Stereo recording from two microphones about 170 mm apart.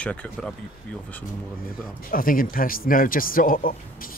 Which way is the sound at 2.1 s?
55° left (ahead or behind).